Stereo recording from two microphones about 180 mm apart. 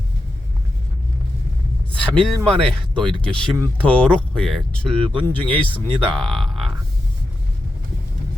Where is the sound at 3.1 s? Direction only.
20° right (ahead or behind).